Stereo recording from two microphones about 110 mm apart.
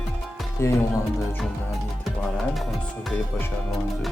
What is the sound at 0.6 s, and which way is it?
Speech, 25° left (ahead or behind).